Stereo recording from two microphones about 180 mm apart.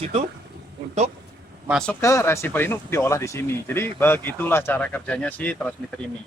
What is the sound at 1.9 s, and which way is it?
A man's voice, 15° left (ahead or behind).